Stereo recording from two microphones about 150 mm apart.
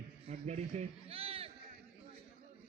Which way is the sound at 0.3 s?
45° right (ahead or behind).